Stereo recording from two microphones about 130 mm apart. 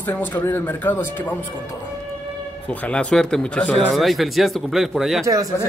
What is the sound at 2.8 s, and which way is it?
A man's voice, 10° left (ahead or behind).